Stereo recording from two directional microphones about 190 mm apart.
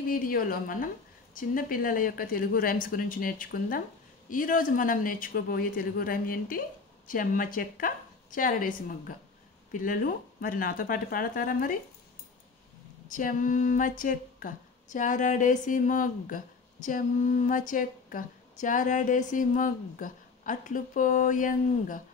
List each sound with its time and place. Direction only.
0.0 s a woman's voice: 50° left (ahead or behind)
13.1 s a woman's voice: 45° left (ahead or behind)